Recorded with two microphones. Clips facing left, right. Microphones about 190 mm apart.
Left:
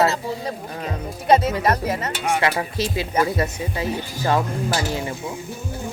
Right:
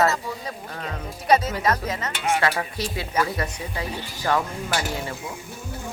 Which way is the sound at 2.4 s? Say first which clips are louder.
Left 3 dB; 25° left (ahead or behind).